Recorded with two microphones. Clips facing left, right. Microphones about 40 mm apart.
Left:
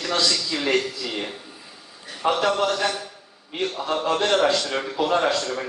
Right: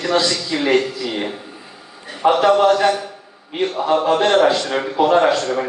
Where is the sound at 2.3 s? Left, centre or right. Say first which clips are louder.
Right 10 dB; right.